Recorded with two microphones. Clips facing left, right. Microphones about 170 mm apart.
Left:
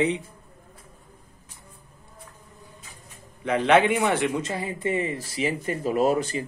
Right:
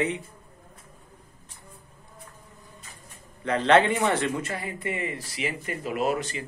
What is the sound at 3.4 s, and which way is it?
A man's voice, 10° left (ahead or behind).